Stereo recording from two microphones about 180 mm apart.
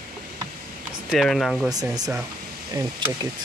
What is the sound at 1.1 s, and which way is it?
Speech, centre (ahead or behind).